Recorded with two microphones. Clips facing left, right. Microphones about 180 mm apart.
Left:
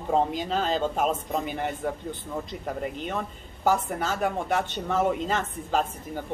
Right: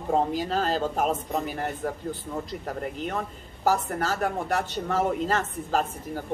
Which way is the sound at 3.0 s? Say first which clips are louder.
Right 1 dB; centre (ahead or behind).